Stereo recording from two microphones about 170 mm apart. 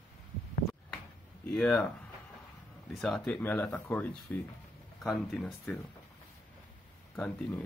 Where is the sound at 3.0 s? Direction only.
5° left (ahead or behind).